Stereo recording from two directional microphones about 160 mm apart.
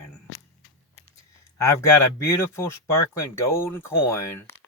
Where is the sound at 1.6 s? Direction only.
20° left (ahead or behind).